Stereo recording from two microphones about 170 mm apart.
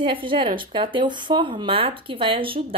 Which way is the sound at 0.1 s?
30° right (ahead or behind).